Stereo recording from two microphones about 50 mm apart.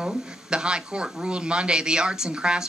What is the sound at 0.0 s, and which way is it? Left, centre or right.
Speech, centre.